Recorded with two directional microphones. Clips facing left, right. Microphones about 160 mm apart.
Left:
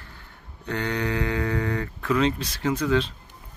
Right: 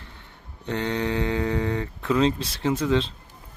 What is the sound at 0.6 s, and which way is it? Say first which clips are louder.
Speech: right 1 dB; 25° right (ahead or behind).